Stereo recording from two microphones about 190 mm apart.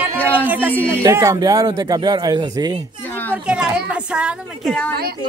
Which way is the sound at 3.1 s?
10° left (ahead or behind).